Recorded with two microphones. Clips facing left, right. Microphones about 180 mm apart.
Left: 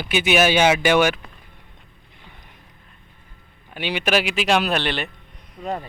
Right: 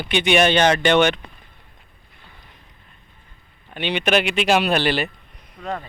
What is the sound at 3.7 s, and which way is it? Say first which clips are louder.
Speech: right 2 dB; 5° left (ahead or behind).